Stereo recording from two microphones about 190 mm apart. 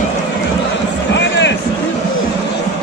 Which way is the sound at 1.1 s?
70° left (ahead or behind).